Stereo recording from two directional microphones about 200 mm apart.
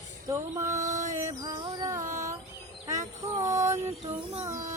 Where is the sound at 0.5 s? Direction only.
35° right (ahead or behind).